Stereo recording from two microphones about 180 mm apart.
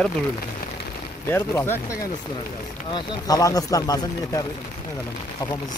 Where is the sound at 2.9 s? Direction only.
20° left (ahead or behind).